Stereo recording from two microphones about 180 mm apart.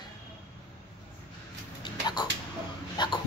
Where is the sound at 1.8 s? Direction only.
25° left (ahead or behind).